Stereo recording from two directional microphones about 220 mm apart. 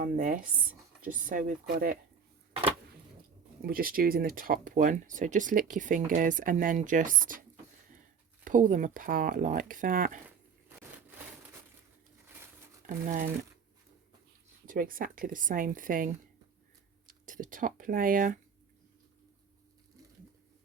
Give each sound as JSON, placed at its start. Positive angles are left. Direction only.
{"t": 0.0, "sound": "speech", "side_deg": -40}
{"t": 2.5, "sound": "a sound", "side_deg": -25}
{"t": 3.7, "sound": "speech", "side_deg": -40}
{"t": 8.4, "sound": "speech", "side_deg": -35}
{"t": 12.9, "sound": "speech", "side_deg": -35}
{"t": 14.7, "sound": "speech", "side_deg": -40}
{"t": 17.1, "sound": "speech", "side_deg": -35}